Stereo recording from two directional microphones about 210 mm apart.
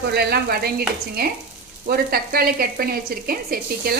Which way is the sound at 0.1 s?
50° right (ahead or behind).